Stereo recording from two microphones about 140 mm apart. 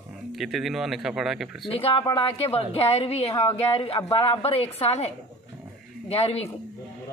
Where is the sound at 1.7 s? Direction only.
40° left (ahead or behind).